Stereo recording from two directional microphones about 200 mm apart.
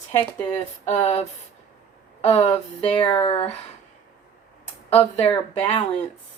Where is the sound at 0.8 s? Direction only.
35° left (ahead or behind).